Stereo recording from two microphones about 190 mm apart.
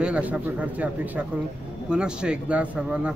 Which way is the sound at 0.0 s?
5° right (ahead or behind).